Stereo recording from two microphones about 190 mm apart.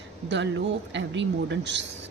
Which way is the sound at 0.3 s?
70° right (ahead or behind).